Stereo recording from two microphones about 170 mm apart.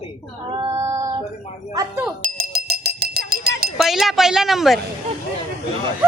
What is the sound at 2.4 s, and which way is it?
Cowbell, 65° right (ahead or behind).